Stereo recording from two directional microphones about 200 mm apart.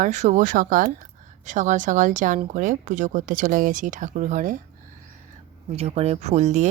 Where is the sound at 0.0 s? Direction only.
35° right (ahead or behind).